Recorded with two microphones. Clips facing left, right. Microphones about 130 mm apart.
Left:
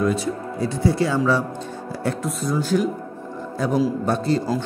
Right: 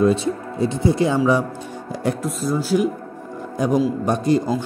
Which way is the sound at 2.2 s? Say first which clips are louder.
Right 1 dB; centre (ahead or behind).